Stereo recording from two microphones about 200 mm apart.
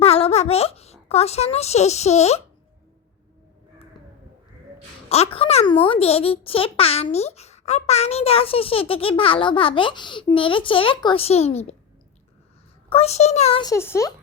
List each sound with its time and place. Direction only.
0.0 s a child's voice: 30° left (ahead or behind)
5.0 s a child's voice: 30° left (ahead or behind)
12.9 s a child's voice: 30° left (ahead or behind)
13.7 s speech: 15° left (ahead or behind)